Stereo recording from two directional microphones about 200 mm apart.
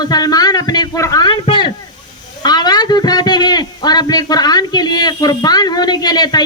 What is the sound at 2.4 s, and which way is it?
A man's voice, 20° left (ahead or behind).